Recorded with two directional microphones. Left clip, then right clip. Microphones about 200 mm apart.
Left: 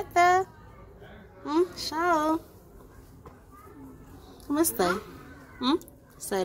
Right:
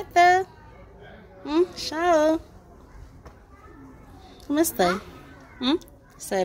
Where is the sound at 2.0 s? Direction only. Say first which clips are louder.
Right 5 dB; 20° right (ahead or behind).